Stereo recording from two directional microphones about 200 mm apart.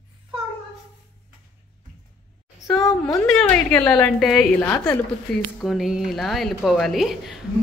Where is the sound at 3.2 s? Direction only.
5° left (ahead or behind).